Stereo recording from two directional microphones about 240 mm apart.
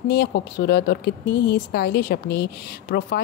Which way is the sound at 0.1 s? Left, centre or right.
Left.